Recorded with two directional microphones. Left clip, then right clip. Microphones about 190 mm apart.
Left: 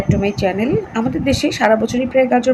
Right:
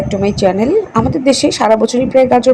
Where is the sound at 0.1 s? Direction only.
20° right (ahead or behind).